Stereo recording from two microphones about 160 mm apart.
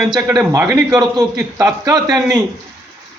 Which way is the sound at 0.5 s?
20° right (ahead or behind).